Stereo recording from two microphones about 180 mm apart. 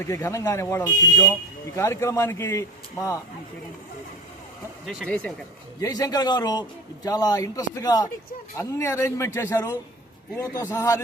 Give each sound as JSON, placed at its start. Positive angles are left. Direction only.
{"t": 0.0, "sound": "speech", "side_deg": 15}
{"t": 5.0, "sound": "speech", "side_deg": 10}
{"t": 5.8, "sound": "a man's voice", "side_deg": 20}